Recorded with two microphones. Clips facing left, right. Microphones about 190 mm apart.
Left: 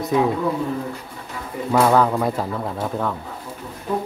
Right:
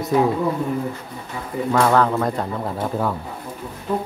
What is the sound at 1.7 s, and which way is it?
Speech, 10° left (ahead or behind).